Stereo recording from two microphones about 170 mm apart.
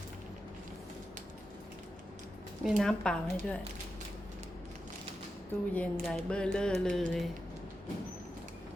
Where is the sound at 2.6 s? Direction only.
Centre (ahead or behind).